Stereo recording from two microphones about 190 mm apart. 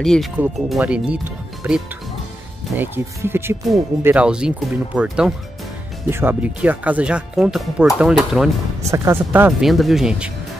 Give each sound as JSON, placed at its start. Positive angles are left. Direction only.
{"t": 0.0, "sound": "speech", "side_deg": 0}
{"t": 2.8, "sound": "speech", "side_deg": -10}
{"t": 8.9, "sound": "speech", "side_deg": -15}